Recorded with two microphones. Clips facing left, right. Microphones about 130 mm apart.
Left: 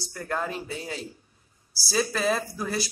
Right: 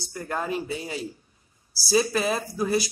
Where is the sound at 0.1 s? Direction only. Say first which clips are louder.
Right 2 dB; 10° right (ahead or behind).